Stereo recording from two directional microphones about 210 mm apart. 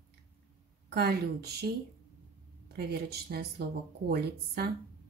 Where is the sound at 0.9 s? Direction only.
50° right (ahead or behind).